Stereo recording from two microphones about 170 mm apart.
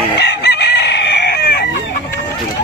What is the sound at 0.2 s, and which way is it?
Chicken, 80° left.